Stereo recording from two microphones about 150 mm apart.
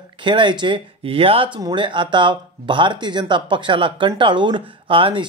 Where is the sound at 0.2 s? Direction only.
30° right (ahead or behind).